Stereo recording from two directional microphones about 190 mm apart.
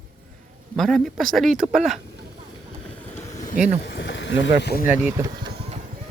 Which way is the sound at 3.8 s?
65° left (ahead or behind).